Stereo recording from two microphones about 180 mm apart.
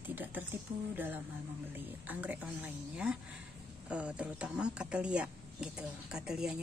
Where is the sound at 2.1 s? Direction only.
10° right (ahead or behind).